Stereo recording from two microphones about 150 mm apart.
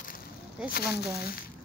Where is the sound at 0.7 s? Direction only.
90° left.